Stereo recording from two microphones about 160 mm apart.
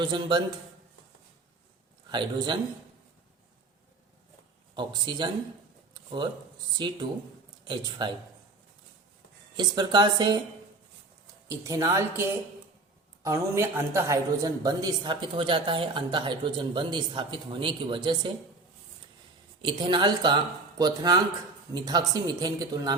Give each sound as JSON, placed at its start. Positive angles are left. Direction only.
{"t": 0.0, "sound": "a woman's voice", "side_deg": -30}
{"t": 2.0, "sound": "a woman's voice", "side_deg": -30}
{"t": 4.7, "sound": "a woman's voice", "side_deg": -30}
{"t": 6.7, "sound": "a woman's voice", "side_deg": -30}
{"t": 9.6, "sound": "a woman's voice", "side_deg": -25}
{"t": 11.4, "sound": "a woman's voice", "side_deg": -20}
{"t": 19.6, "sound": "a woman's voice", "side_deg": -30}